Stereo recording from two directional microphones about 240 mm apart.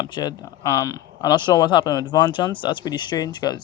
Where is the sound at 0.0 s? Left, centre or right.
Centre.